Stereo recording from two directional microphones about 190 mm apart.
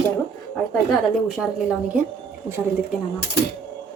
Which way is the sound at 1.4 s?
5° right (ahead or behind).